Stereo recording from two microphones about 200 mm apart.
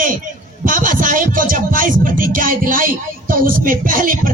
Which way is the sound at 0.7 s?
45° right (ahead or behind).